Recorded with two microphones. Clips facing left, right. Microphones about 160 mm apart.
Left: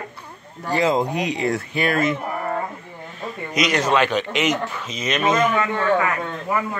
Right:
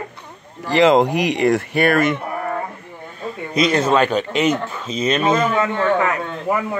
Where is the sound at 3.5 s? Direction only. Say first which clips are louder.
Right 3 dB; 30° right (ahead or behind).